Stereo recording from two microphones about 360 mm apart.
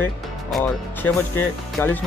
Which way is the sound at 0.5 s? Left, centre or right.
Centre.